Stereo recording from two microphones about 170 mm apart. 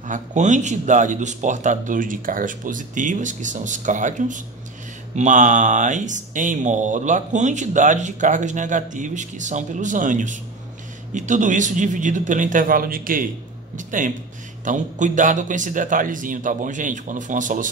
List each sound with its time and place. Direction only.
0.1 s speech: 45° right (ahead or behind)